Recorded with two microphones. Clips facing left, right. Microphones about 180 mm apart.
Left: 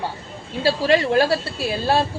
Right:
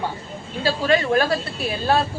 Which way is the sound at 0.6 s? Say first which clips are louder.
Left 2 dB; 30° left (ahead or behind).